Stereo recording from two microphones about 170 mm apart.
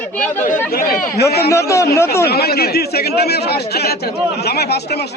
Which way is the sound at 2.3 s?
70° left (ahead or behind).